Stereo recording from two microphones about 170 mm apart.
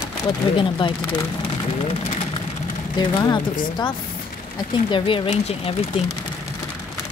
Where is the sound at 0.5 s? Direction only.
30° left (ahead or behind).